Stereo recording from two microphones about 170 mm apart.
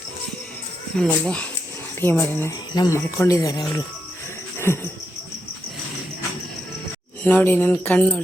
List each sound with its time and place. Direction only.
0.9 s speech: 5° left (ahead or behind); by 3.7 s 20° left (ahead or behind)
4.5 s a sound: 15° left (ahead or behind)
7.3 s speech: 10° left (ahead or behind)